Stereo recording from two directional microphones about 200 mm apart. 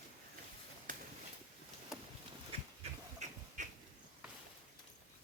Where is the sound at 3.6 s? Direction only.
40° right (ahead or behind).